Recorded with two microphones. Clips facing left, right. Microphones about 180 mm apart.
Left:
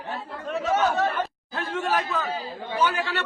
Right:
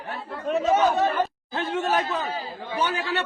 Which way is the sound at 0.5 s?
20° right (ahead or behind).